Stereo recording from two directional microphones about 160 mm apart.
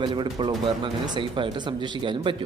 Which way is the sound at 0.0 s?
30° right (ahead or behind).